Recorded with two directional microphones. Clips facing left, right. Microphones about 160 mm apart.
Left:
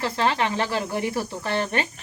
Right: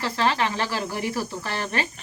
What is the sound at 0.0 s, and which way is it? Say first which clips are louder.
Speech: even; 25° left (ahead or behind).